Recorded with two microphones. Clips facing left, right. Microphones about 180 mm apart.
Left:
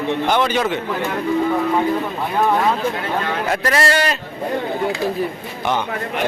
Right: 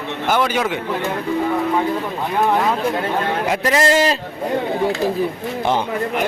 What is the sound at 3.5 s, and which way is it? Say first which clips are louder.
Speech: right 2 dB; 15° right (ahead or behind).